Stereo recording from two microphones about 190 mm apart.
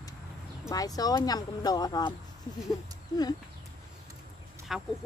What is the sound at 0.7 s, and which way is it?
Speech, 20° left (ahead or behind).